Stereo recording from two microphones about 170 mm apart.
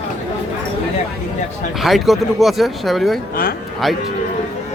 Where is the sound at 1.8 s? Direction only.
Centre (ahead or behind).